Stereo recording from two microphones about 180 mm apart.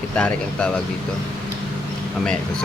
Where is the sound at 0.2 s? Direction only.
5° left (ahead or behind).